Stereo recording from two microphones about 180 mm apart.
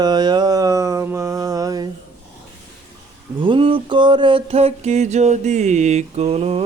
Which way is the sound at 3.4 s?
30° right (ahead or behind).